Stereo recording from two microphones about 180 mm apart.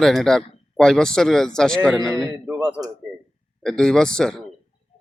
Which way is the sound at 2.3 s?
10° right (ahead or behind).